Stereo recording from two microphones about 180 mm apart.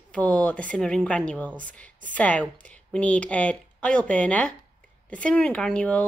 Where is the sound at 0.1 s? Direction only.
5° left (ahead or behind).